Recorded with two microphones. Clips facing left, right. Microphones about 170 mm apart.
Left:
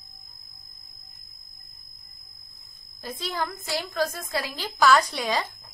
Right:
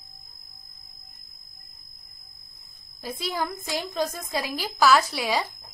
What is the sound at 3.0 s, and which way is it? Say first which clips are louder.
A woman's voice: right 1 dB; 10° right (ahead or behind).